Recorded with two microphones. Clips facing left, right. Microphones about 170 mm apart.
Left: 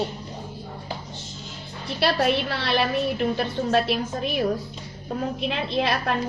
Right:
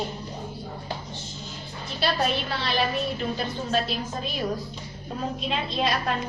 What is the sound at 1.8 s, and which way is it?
A woman's voice, 65° left (ahead or behind).